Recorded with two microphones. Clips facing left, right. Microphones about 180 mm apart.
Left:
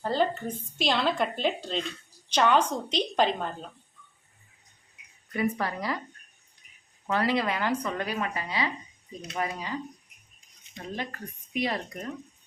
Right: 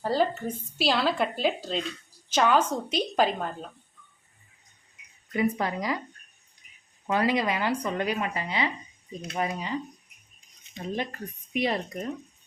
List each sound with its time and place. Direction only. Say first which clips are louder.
0.0 s speech: right 1 dB; 10° right (ahead or behind)
5.4 s a woman's voice: right 2 dB; 15° right (ahead or behind)
7.1 s a woman's voice: right 1 dB; 15° right (ahead or behind)
10.9 s a woman's voice: right 3 dB; 20° right (ahead or behind)